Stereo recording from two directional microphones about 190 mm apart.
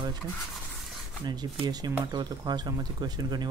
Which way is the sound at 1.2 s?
20° right (ahead or behind).